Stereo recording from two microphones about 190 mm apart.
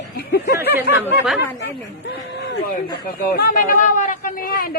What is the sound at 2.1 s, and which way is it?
Speech, 60° left (ahead or behind).